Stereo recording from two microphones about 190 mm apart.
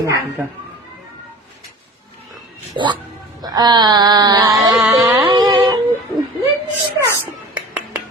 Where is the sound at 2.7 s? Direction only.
25° right (ahead or behind).